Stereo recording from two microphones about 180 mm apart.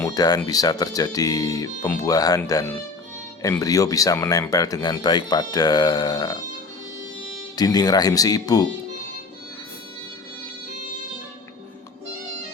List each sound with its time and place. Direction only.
0.0 s speech: 20° left (ahead or behind)
7.5 s speech: 20° left (ahead or behind)